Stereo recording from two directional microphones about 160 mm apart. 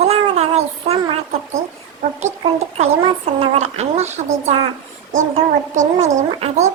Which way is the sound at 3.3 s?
45° right (ahead or behind).